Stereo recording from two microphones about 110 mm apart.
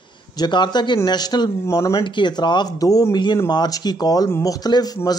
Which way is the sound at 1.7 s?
30° left (ahead or behind).